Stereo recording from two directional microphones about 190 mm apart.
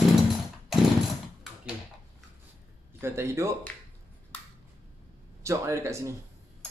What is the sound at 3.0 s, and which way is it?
Speech, 15° right (ahead or behind).